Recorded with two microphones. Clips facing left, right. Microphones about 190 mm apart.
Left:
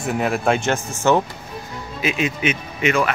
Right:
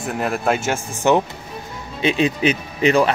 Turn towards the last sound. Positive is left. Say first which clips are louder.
# right 4 dB
turn(degrees=-35)  # may be behind; listen again after turning